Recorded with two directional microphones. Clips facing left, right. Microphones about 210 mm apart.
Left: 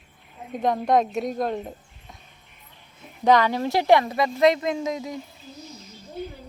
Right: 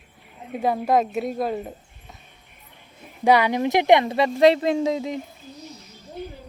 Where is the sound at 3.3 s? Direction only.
10° right (ahead or behind).